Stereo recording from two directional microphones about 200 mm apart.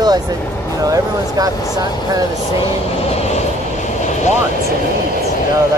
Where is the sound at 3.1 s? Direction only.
35° left (ahead or behind).